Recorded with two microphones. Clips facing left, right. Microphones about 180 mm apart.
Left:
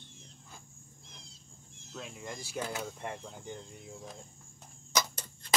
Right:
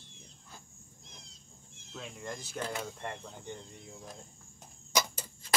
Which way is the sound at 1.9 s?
Centre (ahead or behind).